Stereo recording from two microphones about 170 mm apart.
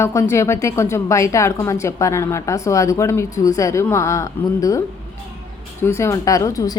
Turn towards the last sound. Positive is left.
turn(degrees=20)  # may be behind; listen again after turning